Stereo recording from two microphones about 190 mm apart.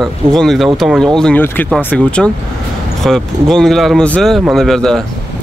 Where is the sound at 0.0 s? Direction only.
Centre (ahead or behind).